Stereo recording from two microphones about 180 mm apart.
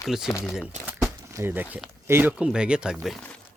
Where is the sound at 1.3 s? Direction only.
10° right (ahead or behind).